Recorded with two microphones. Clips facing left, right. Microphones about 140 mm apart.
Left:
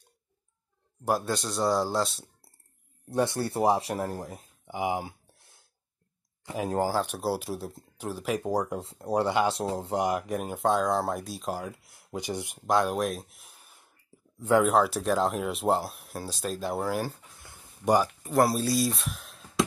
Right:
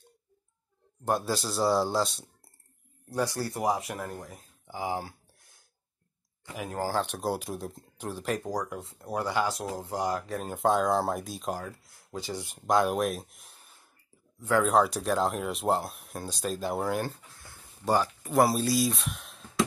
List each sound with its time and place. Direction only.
1.0 s speech: centre (ahead or behind)
3.1 s speech: 25° left (ahead or behind)
6.4 s speech: 30° left (ahead or behind)
6.9 s speech: 5° left (ahead or behind)
8.4 s speech: 25° left (ahead or behind)
10.5 s speech: centre (ahead or behind)
11.9 s speech: 20° left (ahead or behind)
12.5 s speech: centre (ahead or behind)
17.4 s a sound: 20° left (ahead or behind)
18.2 s speech: centre (ahead or behind)